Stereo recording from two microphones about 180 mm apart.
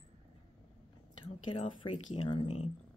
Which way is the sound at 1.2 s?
30° left (ahead or behind).